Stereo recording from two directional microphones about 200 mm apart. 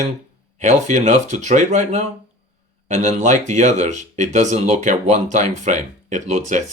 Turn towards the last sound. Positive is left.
turn(degrees=-35)  # may be behind; listen again after turning